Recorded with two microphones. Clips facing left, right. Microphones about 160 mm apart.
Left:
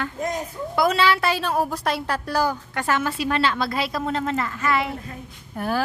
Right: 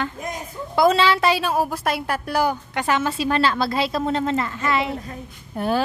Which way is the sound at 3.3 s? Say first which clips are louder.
Right 3 dB; 35° right (ahead or behind).